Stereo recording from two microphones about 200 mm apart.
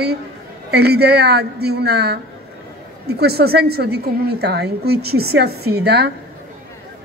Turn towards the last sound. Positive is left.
turn(degrees=-55)  # may be behind; listen again after turning